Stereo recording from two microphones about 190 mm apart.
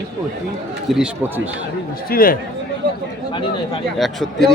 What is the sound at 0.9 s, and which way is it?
Speech, 5° right (ahead or behind).